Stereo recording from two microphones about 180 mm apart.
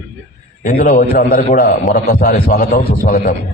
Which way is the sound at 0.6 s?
50° left (ahead or behind).